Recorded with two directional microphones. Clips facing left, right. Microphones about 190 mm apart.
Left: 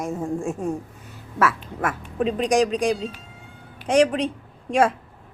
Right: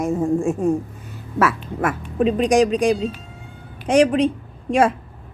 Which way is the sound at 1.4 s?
10° right (ahead or behind).